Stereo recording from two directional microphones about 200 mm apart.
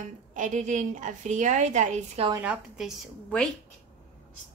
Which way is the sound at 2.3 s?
5° right (ahead or behind).